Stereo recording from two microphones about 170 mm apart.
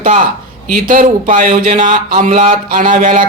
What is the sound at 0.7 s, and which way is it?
A man's voice, 50° right (ahead or behind).